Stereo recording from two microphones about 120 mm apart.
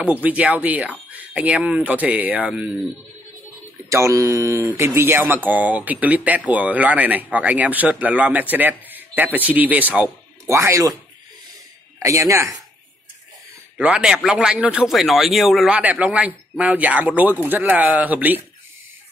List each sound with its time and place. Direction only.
0.0 s speech: 10° right (ahead or behind)
3.9 s speech: 25° right (ahead or behind)
10.4 s speech: 25° right (ahead or behind)
12.0 s speech: 25° right (ahead or behind)
13.7 s speech: 10° right (ahead or behind)